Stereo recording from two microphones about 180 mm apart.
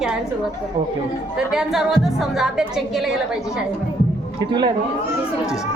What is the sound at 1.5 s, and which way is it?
A woman's voice, centre (ahead or behind).